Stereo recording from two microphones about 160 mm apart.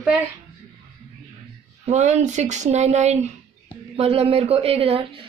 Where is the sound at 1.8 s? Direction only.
45° right (ahead or behind).